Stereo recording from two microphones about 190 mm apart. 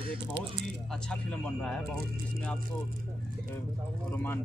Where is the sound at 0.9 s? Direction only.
5° left (ahead or behind).